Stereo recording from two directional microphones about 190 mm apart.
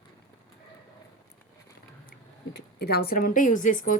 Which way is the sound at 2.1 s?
60° left (ahead or behind).